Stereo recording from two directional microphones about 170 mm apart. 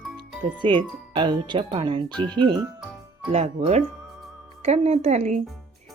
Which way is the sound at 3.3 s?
35° right (ahead or behind).